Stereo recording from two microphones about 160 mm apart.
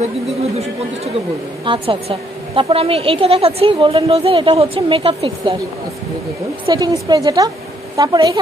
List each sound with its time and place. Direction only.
1.6 s a woman's voice: 30° right (ahead or behind)
6.6 s a woman's voice: 25° right (ahead or behind)